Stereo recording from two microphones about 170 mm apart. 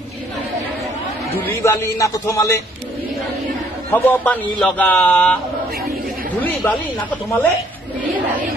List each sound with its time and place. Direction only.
1.4 s a man's voice: 15° left (ahead or behind)
3.9 s a man's voice: 10° left (ahead or behind)
6.4 s a man's voice: 10° left (ahead or behind)